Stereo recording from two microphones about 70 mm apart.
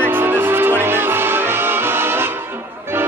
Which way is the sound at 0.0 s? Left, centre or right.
Right.